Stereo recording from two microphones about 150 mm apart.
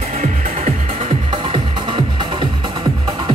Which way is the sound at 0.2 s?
50° right (ahead or behind).